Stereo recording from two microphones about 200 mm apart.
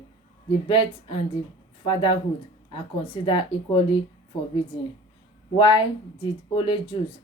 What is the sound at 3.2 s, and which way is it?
Speech, 25° left (ahead or behind).